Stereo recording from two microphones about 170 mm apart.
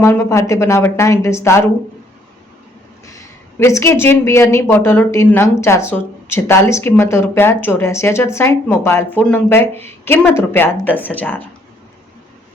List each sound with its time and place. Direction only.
0.0 s speech: 15° left (ahead or behind)
3.1 s speech: 20° left (ahead or behind)